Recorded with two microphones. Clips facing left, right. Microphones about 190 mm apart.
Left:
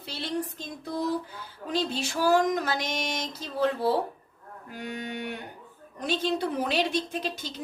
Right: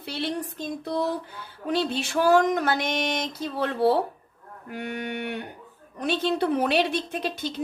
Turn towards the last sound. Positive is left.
turn(degrees=-60)  # may be behind; listen again after turning